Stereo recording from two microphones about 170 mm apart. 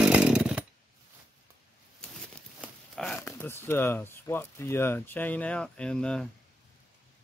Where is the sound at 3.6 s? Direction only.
15° left (ahead or behind).